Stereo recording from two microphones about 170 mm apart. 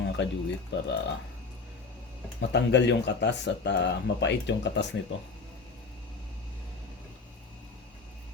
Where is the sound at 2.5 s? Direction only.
90° left.